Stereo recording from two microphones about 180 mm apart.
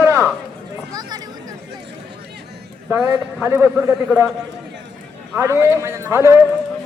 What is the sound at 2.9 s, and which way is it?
Speech, 10° right (ahead or behind).